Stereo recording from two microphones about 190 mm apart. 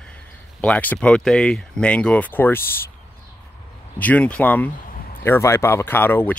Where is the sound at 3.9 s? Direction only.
10° left (ahead or behind).